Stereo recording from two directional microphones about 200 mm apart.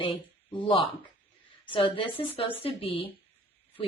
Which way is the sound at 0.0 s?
25° left (ahead or behind).